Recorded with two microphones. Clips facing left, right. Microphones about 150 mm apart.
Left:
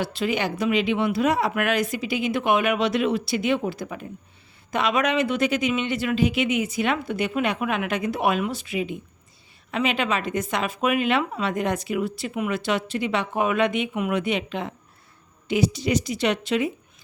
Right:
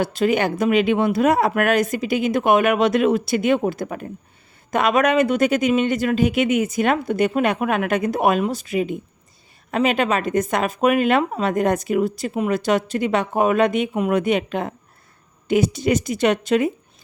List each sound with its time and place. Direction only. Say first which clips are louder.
0.0 s speech: right 6 dB; 45° right (ahead or behind)